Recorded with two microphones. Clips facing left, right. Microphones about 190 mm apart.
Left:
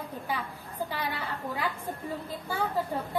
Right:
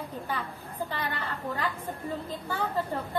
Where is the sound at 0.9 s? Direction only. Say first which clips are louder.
Even; 10° left (ahead or behind).